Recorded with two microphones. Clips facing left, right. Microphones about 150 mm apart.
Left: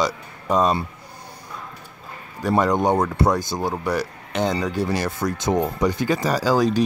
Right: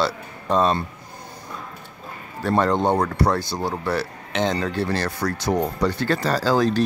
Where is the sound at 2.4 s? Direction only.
10° left (ahead or behind).